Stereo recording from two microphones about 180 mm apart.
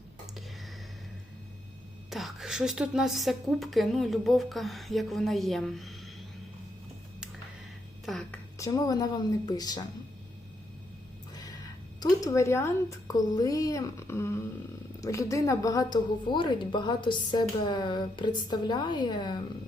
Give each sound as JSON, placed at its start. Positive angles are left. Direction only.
{"t": 2.0, "sound": "a woman's voice", "side_deg": 0}
{"t": 8.0, "sound": "a woman's voice", "side_deg": 0}
{"t": 8.5, "sound": "a woman's voice", "side_deg": 20}
{"t": 11.9, "sound": "a woman's voice", "side_deg": 20}